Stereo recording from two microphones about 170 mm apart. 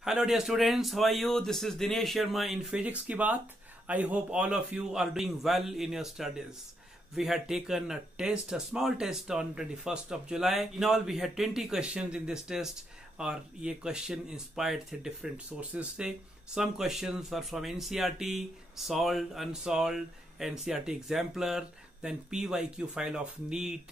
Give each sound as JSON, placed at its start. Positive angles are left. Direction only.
{"t": 0.0, "sound": "speech", "side_deg": 0}